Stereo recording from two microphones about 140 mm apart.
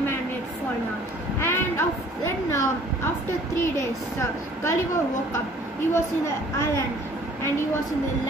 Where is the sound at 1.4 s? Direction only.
15° left (ahead or behind).